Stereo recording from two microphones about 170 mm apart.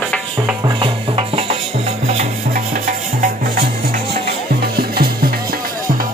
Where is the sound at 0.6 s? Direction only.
35° right (ahead or behind).